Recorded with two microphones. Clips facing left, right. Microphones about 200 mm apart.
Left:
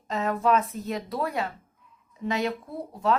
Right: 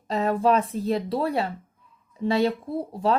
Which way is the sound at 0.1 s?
35° right (ahead or behind).